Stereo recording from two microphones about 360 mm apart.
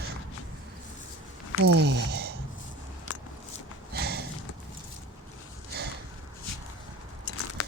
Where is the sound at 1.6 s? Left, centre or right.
Right.